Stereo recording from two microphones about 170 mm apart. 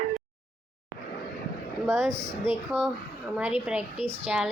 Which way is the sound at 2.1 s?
15° right (ahead or behind).